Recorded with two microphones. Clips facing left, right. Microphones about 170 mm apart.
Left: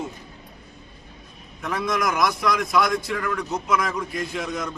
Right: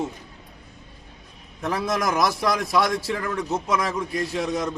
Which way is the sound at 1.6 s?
35° right (ahead or behind).